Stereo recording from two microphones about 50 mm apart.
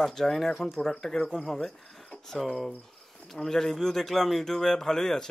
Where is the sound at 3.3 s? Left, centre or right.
Centre.